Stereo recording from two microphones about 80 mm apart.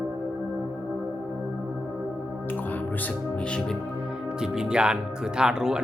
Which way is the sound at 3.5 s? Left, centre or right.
Centre.